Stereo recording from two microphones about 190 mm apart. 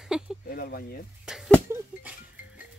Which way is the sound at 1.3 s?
Centre (ahead or behind).